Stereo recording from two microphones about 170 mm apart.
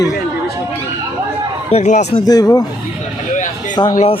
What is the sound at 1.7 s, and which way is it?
Speech, 40° left (ahead or behind).